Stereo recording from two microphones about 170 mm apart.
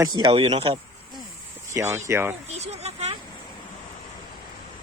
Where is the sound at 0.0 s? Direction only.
25° right (ahead or behind).